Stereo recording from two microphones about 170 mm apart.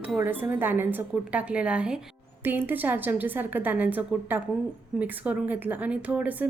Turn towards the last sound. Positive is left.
turn(degrees=-10)  # may be behind; listen again after turning